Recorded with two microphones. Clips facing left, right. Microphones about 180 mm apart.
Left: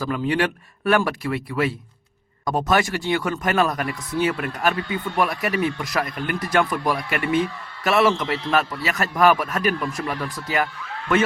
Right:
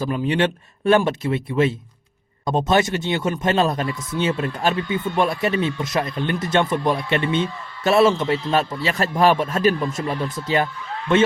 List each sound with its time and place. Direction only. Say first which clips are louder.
0.0 s speech: right 2 dB; 20° right (ahead or behind)